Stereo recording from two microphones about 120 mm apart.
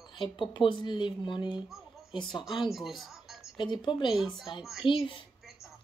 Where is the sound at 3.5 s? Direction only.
40° left (ahead or behind).